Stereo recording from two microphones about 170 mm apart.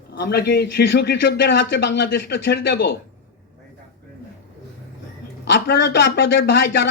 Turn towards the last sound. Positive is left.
turn(degrees=90)